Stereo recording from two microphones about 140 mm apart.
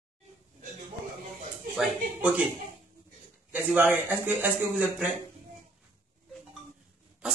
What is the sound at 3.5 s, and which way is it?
Speech, 10° right (ahead or behind).